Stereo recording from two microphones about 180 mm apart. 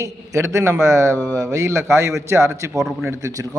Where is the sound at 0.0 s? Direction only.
15° right (ahead or behind).